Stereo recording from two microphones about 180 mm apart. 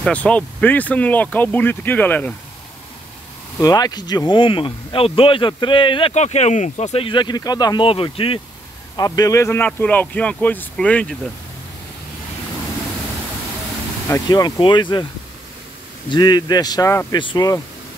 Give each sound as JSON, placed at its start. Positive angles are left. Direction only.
{"t": 0.0, "sound": "speech", "side_deg": 5}
{"t": 3.5, "sound": "speech", "side_deg": 20}
{"t": 8.9, "sound": "speech", "side_deg": 20}
{"t": 14.0, "sound": "speech", "side_deg": 15}
{"t": 16.1, "sound": "speech", "side_deg": 25}